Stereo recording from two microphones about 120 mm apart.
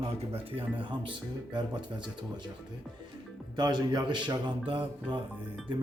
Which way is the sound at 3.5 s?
35° right (ahead or behind).